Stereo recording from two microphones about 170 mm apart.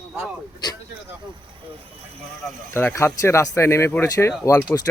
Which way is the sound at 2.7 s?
15° left (ahead or behind).